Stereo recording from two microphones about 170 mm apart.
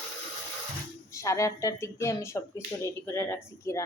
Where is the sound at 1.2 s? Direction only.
20° left (ahead or behind).